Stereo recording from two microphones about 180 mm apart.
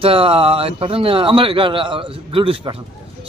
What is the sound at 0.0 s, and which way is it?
A man's voice, 30° right (ahead or behind).